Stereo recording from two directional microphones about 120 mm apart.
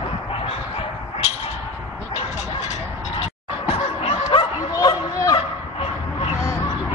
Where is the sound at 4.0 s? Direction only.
50° left (ahead or behind).